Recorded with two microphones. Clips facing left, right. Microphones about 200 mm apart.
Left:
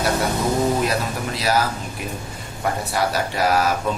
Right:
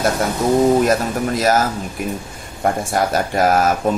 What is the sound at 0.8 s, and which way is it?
Speech, 45° right (ahead or behind).